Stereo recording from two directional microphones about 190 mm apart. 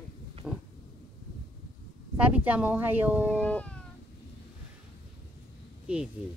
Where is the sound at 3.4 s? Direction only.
5° left (ahead or behind).